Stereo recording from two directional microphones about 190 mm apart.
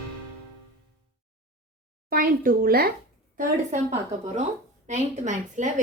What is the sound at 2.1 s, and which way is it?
Speech, 50° right (ahead or behind).